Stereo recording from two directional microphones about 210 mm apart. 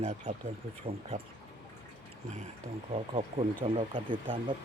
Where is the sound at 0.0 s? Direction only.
30° right (ahead or behind).